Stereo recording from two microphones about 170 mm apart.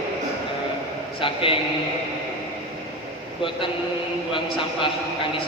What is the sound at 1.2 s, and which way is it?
Speech, 30° left (ahead or behind).